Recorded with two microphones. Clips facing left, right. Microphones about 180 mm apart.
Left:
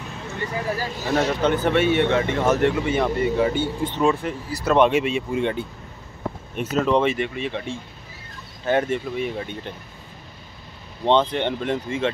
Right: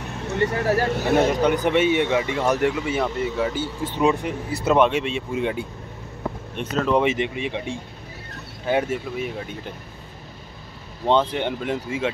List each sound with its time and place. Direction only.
0.3 s speech: 70° right (ahead or behind)
1.1 s speech: 15° right (ahead or behind)
4.0 s speech: 15° right (ahead or behind)
4.7 s speech: centre (ahead or behind)
7.0 s speech: 15° right (ahead or behind)
11.1 s speech: 10° right (ahead or behind)